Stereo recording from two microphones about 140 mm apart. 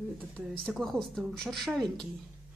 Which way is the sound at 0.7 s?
Centre (ahead or behind).